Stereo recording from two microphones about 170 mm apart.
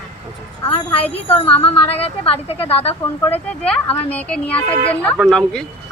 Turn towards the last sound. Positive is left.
turn(degrees=0)  # may be behind; listen again after turning